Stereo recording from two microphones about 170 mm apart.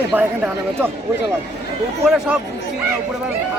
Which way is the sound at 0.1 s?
10° right (ahead or behind).